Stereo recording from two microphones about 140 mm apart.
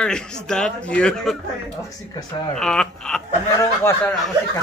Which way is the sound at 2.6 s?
5° left (ahead or behind).